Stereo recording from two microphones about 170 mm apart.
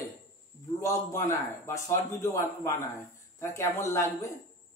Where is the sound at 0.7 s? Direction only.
15° left (ahead or behind).